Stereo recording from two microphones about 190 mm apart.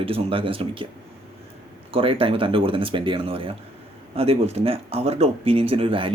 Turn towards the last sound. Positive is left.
turn(degrees=-25)  # may be behind; listen again after turning